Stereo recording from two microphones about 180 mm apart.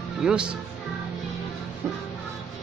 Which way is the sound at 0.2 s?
5° right (ahead or behind).